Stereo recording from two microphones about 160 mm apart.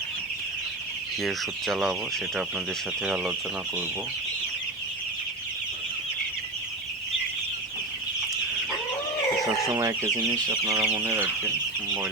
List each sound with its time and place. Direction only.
1.2 s speech: centre (ahead or behind)
9.7 s speech: 20° right (ahead or behind)